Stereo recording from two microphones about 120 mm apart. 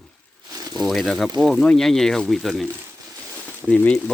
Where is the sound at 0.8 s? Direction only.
Centre (ahead or behind).